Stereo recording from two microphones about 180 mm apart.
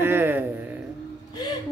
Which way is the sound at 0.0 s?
10° right (ahead or behind).